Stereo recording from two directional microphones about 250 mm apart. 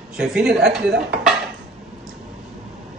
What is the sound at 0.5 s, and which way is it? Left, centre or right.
Speech, right.